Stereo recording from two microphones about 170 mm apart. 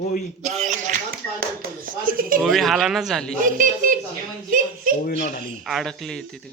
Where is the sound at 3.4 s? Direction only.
55° right (ahead or behind).